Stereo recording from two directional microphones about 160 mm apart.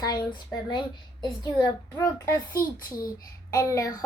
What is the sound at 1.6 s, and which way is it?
Speech, 20° left (ahead or behind).